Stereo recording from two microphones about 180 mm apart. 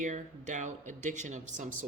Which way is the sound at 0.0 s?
45° right (ahead or behind).